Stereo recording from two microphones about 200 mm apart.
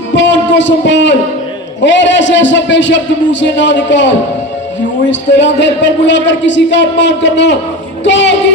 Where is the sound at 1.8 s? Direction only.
65° left (ahead or behind).